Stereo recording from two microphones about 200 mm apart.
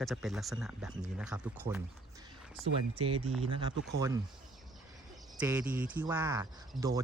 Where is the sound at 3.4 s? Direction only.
25° right (ahead or behind).